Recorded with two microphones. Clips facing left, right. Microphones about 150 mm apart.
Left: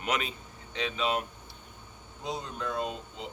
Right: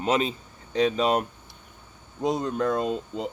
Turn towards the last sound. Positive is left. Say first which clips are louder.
# right 7 dB
turn(degrees=-50)  # may be behind; listen again after turning